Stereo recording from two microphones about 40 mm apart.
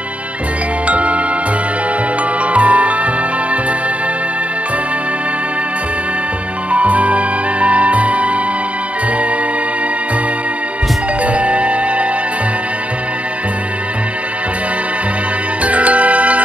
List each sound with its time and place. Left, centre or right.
0.8 s jingle: right
2.5 s music: right
6.7 s music: right
11.2 s music: right
15.6 s music: right